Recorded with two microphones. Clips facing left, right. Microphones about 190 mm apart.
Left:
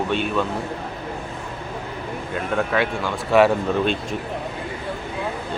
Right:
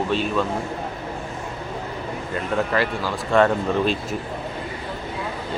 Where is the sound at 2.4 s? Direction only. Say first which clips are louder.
Even; centre (ahead or behind).